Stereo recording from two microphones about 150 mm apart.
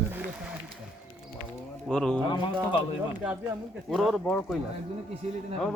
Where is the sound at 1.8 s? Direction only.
5° left (ahead or behind).